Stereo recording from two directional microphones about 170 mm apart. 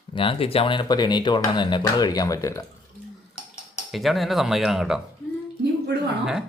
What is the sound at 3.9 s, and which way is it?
Speech, centre (ahead or behind).